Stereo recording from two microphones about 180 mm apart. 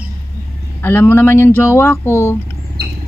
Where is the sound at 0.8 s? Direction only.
10° left (ahead or behind).